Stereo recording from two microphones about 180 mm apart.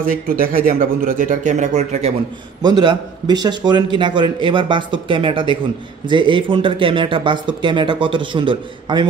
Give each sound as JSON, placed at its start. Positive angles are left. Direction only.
{"t": 0.0, "sound": "speech", "side_deg": -50}
{"t": 2.6, "sound": "a man's voice", "side_deg": -25}